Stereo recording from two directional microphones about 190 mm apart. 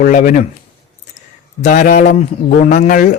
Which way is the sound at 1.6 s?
40° left (ahead or behind).